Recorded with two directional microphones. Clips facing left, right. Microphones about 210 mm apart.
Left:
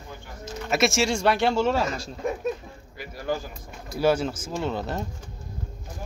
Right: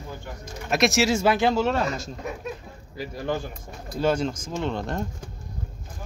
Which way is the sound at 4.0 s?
5° left (ahead or behind).